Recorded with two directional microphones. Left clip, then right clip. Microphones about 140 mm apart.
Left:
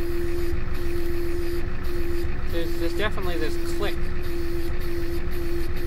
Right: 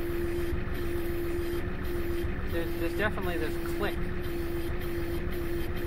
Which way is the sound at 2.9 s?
20° left (ahead or behind).